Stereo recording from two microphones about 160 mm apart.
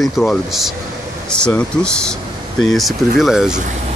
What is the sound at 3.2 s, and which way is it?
Speech, 5° right (ahead or behind).